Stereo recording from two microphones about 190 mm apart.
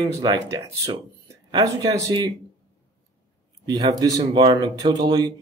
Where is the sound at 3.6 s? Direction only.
20° right (ahead or behind).